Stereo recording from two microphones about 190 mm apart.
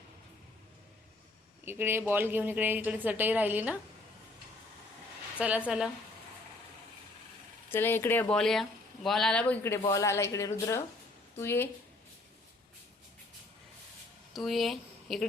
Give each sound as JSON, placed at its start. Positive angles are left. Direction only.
{"t": 1.6, "sound": "a woman's voice", "side_deg": -10}
{"t": 5.4, "sound": "a woman's voice", "side_deg": -5}
{"t": 7.7, "sound": "speech", "side_deg": 10}
{"t": 14.3, "sound": "speech", "side_deg": 0}